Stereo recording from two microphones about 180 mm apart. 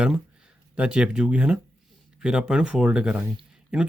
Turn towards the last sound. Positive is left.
turn(degrees=-5)  # may be behind; listen again after turning